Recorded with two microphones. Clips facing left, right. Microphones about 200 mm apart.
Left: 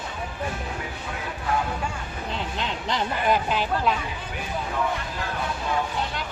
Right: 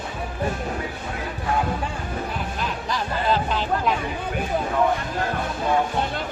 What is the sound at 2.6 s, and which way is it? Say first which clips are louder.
Speech: left 2 dB; 25° left (ahead or behind).